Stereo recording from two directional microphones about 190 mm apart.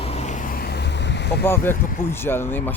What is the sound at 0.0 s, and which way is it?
Vehicle, 35° left (ahead or behind).